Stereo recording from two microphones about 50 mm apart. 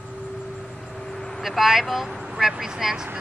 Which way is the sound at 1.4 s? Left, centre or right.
Centre.